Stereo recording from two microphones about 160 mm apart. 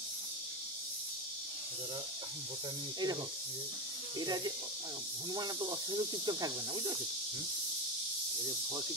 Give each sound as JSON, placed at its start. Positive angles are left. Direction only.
{"t": 4.2, "sound": "speech", "side_deg": -25}